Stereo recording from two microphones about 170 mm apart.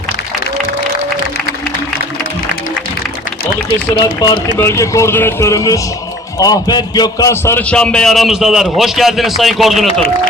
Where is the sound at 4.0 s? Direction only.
25° left (ahead or behind); by 9.8 s centre (ahead or behind).